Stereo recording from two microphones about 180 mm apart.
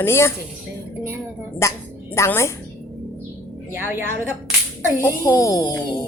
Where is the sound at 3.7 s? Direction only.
10° right (ahead or behind).